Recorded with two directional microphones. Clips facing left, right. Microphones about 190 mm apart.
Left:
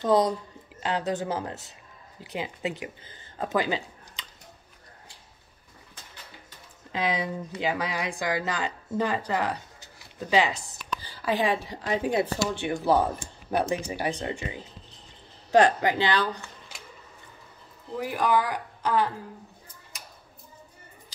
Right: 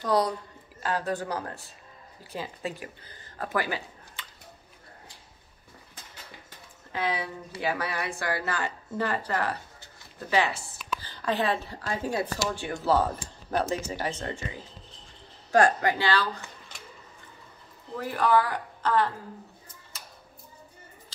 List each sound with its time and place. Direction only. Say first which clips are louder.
0.0 s speech: left 3 dB; 20° left (ahead or behind)
6.9 s a woman's voice: left 2 dB; 15° left (ahead or behind)
15.5 s speech: left 2 dB; 20° left (ahead or behind)
17.9 s speech: right 1 dB; 15° left (ahead or behind)
19.9 s a sound: left 1 dB; 15° left (ahead or behind)